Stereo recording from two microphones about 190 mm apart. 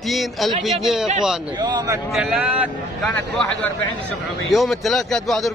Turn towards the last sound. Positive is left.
turn(degrees=0)  # may be behind; listen again after turning